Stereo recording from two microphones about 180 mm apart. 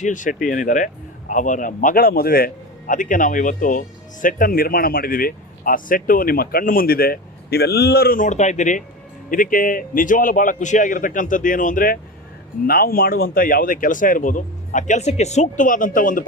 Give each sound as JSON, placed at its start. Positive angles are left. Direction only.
{"t": 0.0, "sound": "a man's voice", "side_deg": 45}